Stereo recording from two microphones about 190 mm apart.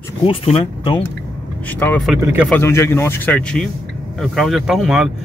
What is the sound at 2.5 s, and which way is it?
Speech, 15° left (ahead or behind).